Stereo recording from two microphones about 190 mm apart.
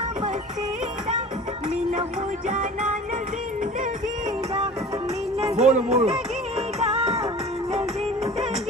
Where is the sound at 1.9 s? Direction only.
40° right (ahead or behind).